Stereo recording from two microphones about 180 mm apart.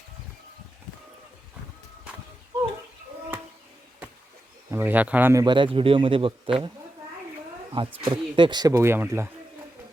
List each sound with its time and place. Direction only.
2.1 s a sound: 5° right (ahead or behind)
4.7 s a man's voice: 10° right (ahead or behind); by 6.7 s 30° right (ahead or behind)
7.7 s a man's voice: 30° right (ahead or behind); by 9.3 s 15° right (ahead or behind)